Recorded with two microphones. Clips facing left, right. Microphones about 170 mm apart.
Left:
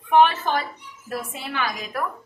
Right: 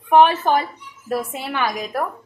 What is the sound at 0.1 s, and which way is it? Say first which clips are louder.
Speech: right 4 dB; 45° right (ahead or behind).